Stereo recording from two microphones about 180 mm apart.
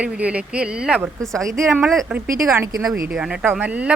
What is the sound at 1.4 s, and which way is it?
Speech, 15° right (ahead or behind).